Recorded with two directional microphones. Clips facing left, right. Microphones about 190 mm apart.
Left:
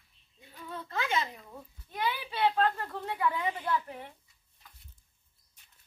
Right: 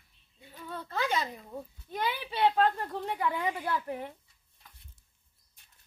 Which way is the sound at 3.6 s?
45° right (ahead or behind).